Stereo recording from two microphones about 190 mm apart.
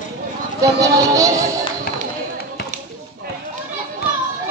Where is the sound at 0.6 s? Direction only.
15° right (ahead or behind).